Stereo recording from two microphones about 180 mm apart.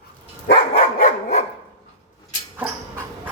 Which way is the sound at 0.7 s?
45° left (ahead or behind).